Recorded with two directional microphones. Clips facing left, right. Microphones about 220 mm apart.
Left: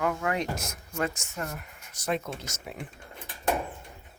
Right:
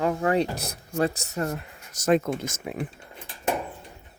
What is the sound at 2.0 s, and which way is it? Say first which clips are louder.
Speech: right 9 dB; 50° right (ahead or behind).